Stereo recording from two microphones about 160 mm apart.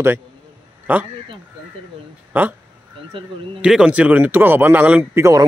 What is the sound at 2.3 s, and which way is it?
Speech, 10° right (ahead or behind).